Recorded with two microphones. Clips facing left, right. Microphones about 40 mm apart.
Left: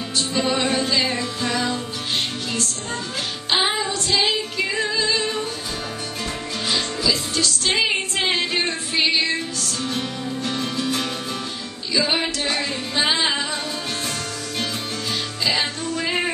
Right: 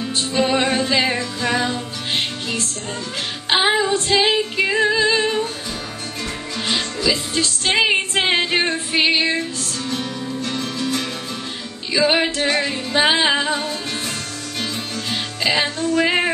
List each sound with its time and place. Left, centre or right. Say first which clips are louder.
0.4 s music: right 4 dB; right
7.1 s music: right 2 dB; right
9.8 s music: right 2 dB; centre
12.0 s music: right 5 dB; right
15.4 s music: right 3 dB; right